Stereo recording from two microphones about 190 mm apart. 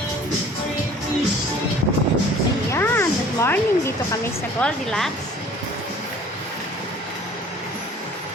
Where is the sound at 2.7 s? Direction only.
10° left (ahead or behind).